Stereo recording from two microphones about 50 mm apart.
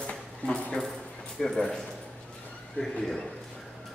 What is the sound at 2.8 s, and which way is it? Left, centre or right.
Speech, left.